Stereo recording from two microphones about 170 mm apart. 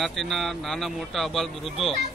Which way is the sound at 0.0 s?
Centre (ahead or behind).